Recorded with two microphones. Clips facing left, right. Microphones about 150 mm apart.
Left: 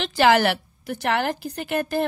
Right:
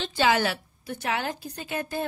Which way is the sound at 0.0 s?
85° left.